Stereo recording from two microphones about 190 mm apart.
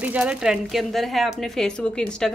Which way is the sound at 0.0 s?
5° right (ahead or behind).